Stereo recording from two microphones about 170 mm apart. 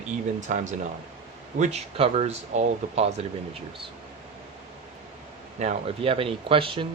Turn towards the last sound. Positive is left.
turn(degrees=-30)  # may be behind; listen again after turning